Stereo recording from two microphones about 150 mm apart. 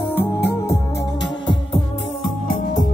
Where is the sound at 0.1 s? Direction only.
15° left (ahead or behind).